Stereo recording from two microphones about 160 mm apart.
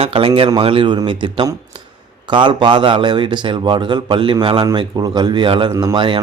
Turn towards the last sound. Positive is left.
turn(degrees=-30)  # may be behind; listen again after turning